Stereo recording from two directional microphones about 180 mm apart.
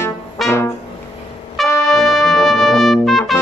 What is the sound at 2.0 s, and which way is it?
Trumpet, centre (ahead or behind).